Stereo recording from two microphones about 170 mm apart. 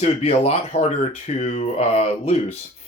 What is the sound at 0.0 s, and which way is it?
Speech, 35° left (ahead or behind).